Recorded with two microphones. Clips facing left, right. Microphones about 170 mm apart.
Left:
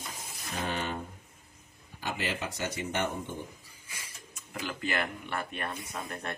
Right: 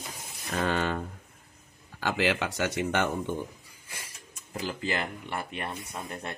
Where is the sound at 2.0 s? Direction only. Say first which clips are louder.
Right 7 dB; 90° right.